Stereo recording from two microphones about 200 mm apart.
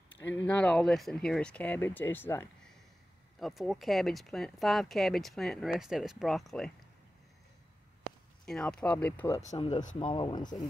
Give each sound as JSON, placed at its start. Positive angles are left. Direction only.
{"t": 0.5, "sound": "speech", "side_deg": 5}
{"t": 3.3, "sound": "speech", "side_deg": 0}
{"t": 8.5, "sound": "speech", "side_deg": 5}
{"t": 9.4, "sound": "speech", "side_deg": 35}
{"t": 9.9, "sound": "speech", "side_deg": 20}